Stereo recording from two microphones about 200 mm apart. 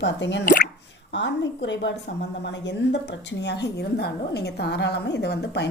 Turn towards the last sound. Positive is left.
turn(degrees=55)  # may be behind; listen again after turning